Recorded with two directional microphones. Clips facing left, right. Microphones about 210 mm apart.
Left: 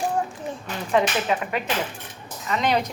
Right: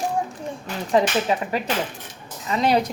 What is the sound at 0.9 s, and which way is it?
Speech, 35° right (ahead or behind).